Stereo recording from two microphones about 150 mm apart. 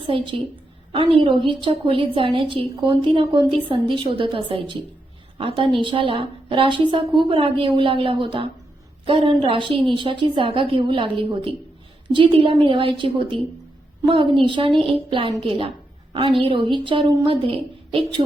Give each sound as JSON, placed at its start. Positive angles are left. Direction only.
{"t": 0.1, "sound": "a woman's voice", "side_deg": -30}
{"t": 14.4, "sound": "a woman's voice", "side_deg": -35}